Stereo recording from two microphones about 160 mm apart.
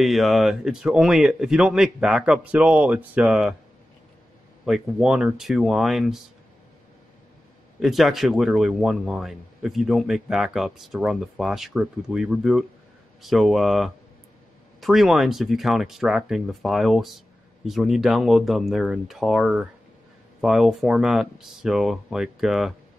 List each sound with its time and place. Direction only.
0.0 s speech: centre (ahead or behind)
4.6 s speech: 5° right (ahead or behind)
7.8 s speech: centre (ahead or behind)